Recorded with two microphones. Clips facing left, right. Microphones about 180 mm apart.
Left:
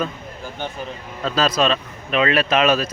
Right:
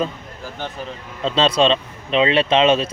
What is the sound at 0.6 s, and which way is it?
Speech, centre (ahead or behind).